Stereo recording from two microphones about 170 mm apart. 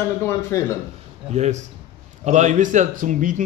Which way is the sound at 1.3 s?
40° right (ahead or behind).